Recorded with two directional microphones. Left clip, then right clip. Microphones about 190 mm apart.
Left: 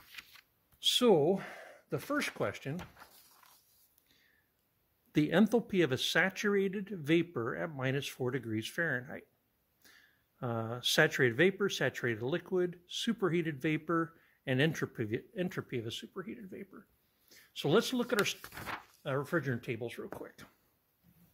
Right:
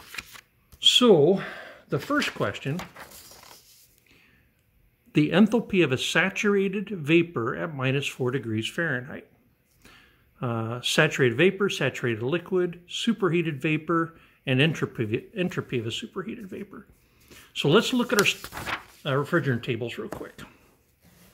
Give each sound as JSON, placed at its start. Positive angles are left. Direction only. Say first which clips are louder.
{"t": 0.1, "sound": "shuffling cards", "louder": "right 12 dB", "side_deg": 20}
{"t": 0.9, "sound": "speech", "louder": "right 8 dB", "side_deg": 40}
{"t": 5.1, "sound": "speech", "louder": "right 7 dB", "side_deg": 40}